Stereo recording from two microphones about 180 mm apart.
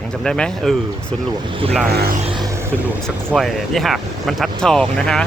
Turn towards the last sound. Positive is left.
turn(degrees=5)  # may be behind; listen again after turning